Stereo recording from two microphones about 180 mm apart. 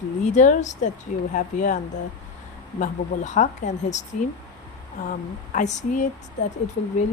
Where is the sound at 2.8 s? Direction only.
45° left (ahead or behind).